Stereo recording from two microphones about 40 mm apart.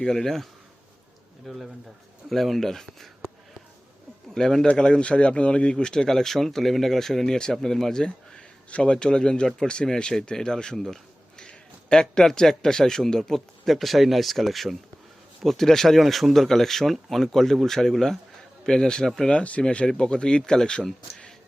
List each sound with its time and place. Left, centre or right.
0.0 s a man's voice: centre
1.5 s a man's voice: centre
4.4 s a man's voice: centre
4.7 s a man's voice: left; by 8.0 s centre
8.0 s a sound: centre
8.7 s a man's voice: left
10.8 s a sound: centre
11.4 s a man's voice: centre
19.3 s speech: left